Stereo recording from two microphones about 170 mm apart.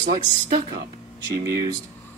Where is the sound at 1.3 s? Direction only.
20° right (ahead or behind).